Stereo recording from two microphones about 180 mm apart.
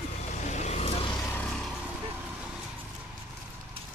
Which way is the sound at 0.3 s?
40° left (ahead or behind).